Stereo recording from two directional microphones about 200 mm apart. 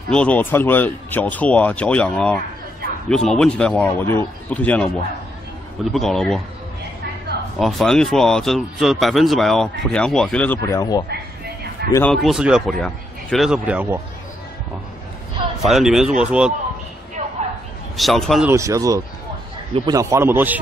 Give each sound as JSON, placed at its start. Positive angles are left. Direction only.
{"t": 0.1, "sound": "speech", "side_deg": 5}
{"t": 5.9, "sound": "speech", "side_deg": 0}
{"t": 7.5, "sound": "speech", "side_deg": 0}
{"t": 11.1, "sound": "a sound", "side_deg": -55}
{"t": 11.9, "sound": "speech", "side_deg": 5}
{"t": 15.6, "sound": "speech", "side_deg": 0}
{"t": 17.2, "sound": "a sound", "side_deg": -35}
{"t": 17.9, "sound": "speech", "side_deg": 0}
{"t": 18.5, "sound": "speech", "side_deg": -15}